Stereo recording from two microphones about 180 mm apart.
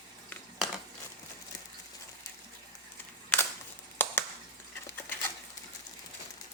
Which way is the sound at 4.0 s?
10° left (ahead or behind).